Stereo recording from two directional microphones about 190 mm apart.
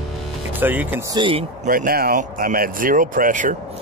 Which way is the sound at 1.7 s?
50° right (ahead or behind).